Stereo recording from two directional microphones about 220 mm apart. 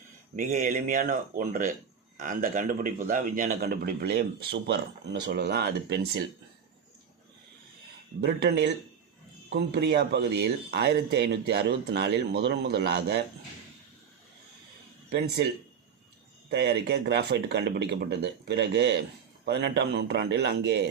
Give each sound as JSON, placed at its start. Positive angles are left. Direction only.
{"t": 0.3, "sound": "a man's voice", "side_deg": -40}
{"t": 8.2, "sound": "a man's voice", "side_deg": -50}
{"t": 16.5, "sound": "a man's voice", "side_deg": -50}